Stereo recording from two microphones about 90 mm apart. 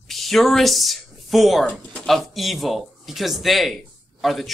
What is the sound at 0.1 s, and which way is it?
A woman's voice, centre (ahead or behind).